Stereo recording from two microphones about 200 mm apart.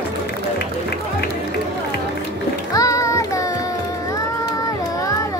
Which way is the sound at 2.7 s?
15° left (ahead or behind).